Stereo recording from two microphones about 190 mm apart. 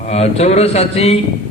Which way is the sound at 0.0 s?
35° left (ahead or behind).